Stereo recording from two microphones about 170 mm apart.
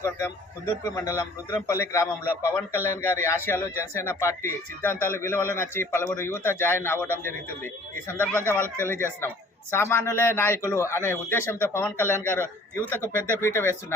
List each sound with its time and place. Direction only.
0.9 s speech: 15° left (ahead or behind)